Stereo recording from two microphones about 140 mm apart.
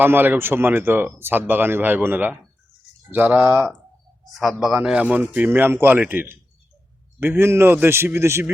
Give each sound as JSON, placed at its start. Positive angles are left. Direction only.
{"t": 0.0, "sound": "speech", "side_deg": -15}
{"t": 4.2, "sound": "speech", "side_deg": 0}